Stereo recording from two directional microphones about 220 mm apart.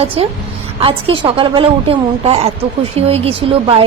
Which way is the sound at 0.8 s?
25° right (ahead or behind).